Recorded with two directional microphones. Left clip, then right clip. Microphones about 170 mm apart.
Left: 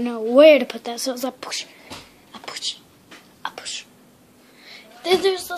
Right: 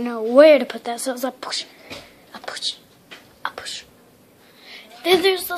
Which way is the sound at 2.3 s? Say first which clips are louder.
Right 2 dB; centre (ahead or behind).